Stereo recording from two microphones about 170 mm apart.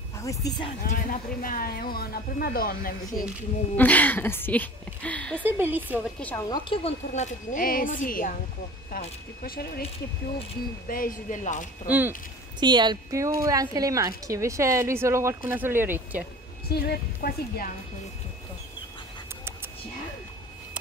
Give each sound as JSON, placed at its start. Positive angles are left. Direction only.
{"t": 0.2, "sound": "speech", "side_deg": 20}
{"t": 0.8, "sound": "speech", "side_deg": 50}
{"t": 3.7, "sound": "speech", "side_deg": 10}
{"t": 5.4, "sound": "a woman's voice", "side_deg": -10}
{"t": 6.1, "sound": "speech", "side_deg": 10}
{"t": 6.5, "sound": "speech", "side_deg": 30}
{"t": 7.5, "sound": "a woman's voice", "side_deg": 55}
{"t": 10.9, "sound": "a woman's voice", "side_deg": 55}
{"t": 12.5, "sound": "a woman's voice", "side_deg": -25}
{"t": 16.6, "sound": "a woman's voice", "side_deg": 70}